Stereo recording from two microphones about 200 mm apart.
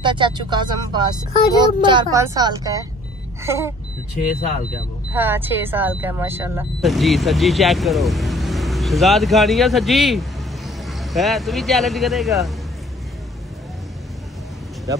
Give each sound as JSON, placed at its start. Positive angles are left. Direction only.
{"t": 0.0, "sound": "a child's voice", "side_deg": -25}
{"t": 5.1, "sound": "speech", "side_deg": -10}
{"t": 6.8, "sound": "speech", "side_deg": 0}